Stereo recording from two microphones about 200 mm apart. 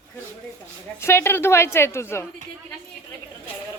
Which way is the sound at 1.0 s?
15° left (ahead or behind).